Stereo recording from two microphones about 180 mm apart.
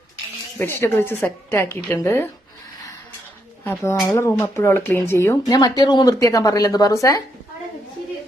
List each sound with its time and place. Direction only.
0.6 s speech: 10° left (ahead or behind)
3.6 s speech: 10° left (ahead or behind)